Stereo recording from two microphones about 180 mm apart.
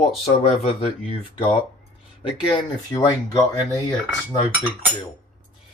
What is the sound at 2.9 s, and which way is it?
Speech, 20° left (ahead or behind).